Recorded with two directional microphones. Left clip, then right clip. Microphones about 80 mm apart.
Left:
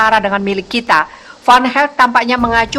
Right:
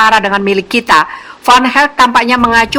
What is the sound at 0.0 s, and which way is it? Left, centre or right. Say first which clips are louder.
Speech: right 3 dB; right.